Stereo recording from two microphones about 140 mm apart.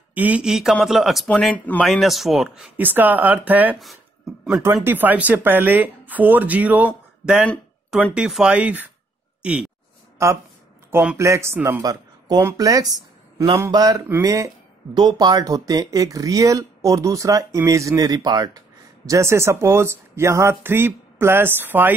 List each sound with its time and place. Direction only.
0.1 s speech: 10° right (ahead or behind)
10.1 s speech: 20° right (ahead or behind)